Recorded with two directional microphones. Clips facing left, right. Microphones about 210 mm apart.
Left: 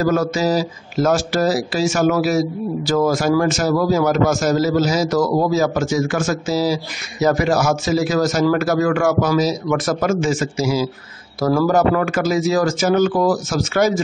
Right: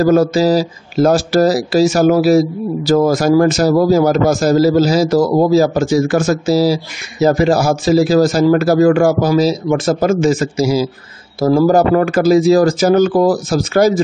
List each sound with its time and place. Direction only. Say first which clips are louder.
0.0 s speech: right 6 dB; 35° right (ahead or behind)